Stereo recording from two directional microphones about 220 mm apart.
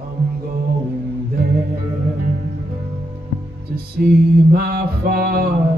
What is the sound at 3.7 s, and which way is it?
Music, 45° right (ahead or behind).